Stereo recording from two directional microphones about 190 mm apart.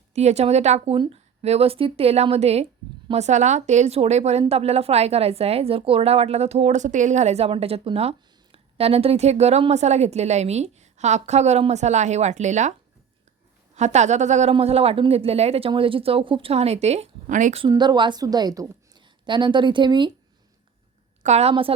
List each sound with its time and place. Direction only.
0.1 s speech: 35° right (ahead or behind)
13.7 s speech: 40° right (ahead or behind)
17.6 s a woman's voice: 25° right (ahead or behind)
21.2 s speech: 35° right (ahead or behind)